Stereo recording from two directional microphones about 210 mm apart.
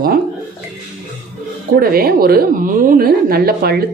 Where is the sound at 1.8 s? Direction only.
45° right (ahead or behind).